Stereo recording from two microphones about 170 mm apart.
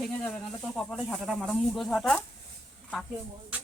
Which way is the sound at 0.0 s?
Centre (ahead or behind).